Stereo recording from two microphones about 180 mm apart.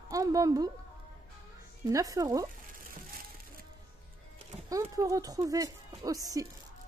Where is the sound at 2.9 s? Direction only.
55° right (ahead or behind).